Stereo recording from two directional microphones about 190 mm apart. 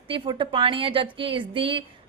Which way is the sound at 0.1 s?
25° right (ahead or behind).